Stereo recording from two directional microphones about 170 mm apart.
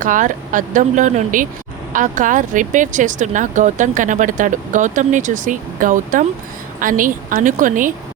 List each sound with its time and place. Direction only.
0.0 s speech: 50° right (ahead or behind)